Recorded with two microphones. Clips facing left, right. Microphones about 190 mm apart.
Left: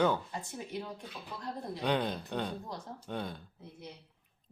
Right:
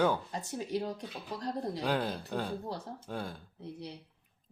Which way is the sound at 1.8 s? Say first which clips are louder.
Left 3 dB; 5° right (ahead or behind).